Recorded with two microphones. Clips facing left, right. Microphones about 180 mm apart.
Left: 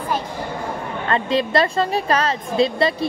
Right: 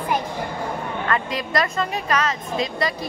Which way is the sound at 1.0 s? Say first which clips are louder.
Left 7 dB; 30° left (ahead or behind).